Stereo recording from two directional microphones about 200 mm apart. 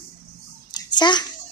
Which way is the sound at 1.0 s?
20° left (ahead or behind).